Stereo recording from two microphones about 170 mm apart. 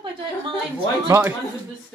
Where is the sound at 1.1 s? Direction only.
15° right (ahead or behind).